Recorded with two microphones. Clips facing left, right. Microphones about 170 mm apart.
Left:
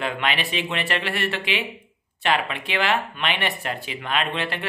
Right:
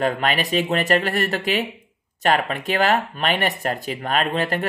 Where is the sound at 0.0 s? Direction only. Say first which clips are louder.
Right 5 dB; 45° right (ahead or behind).